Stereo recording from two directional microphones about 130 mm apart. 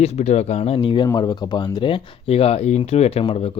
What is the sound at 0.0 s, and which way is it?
Speech, 55° left (ahead or behind).